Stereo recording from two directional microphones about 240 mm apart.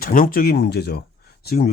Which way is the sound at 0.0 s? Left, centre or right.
Left.